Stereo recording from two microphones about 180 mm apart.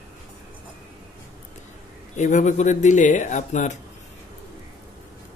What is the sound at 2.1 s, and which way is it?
Speech, 40° left (ahead or behind).